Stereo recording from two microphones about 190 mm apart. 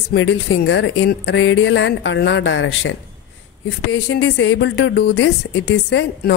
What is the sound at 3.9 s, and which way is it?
Speech, 70° left (ahead or behind).